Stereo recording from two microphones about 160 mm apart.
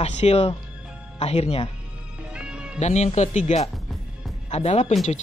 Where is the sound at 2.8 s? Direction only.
45° left (ahead or behind).